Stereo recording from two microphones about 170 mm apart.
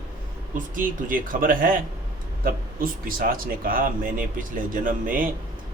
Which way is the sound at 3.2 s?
60° right (ahead or behind).